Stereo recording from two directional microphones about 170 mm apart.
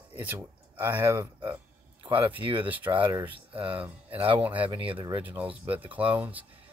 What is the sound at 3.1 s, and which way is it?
Speech, 15° right (ahead or behind).